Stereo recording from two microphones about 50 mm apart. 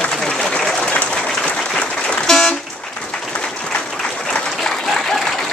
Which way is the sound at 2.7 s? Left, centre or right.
Centre.